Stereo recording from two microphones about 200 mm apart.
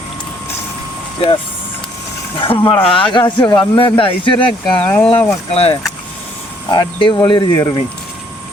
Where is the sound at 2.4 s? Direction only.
25° left (ahead or behind).